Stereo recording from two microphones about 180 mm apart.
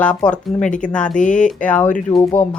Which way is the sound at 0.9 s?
5° left (ahead or behind).